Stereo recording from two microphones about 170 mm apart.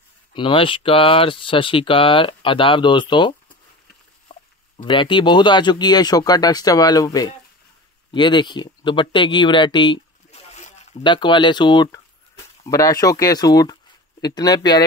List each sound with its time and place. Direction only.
0.3 s speech: 30° left (ahead or behind)
4.3 s a sound: 25° left (ahead or behind)
4.8 s speech: 30° left (ahead or behind)
10.5 s zipper: 40° left (ahead or behind)
11.1 s speech: 25° left (ahead or behind)